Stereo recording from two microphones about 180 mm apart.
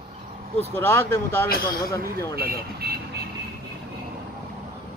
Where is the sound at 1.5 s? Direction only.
55° left (ahead or behind).